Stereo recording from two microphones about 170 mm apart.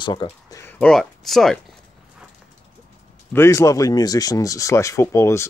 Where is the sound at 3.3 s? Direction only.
15° left (ahead or behind).